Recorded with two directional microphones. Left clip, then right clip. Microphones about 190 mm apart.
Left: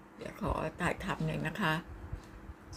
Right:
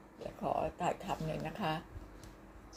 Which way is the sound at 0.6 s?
55° left (ahead or behind).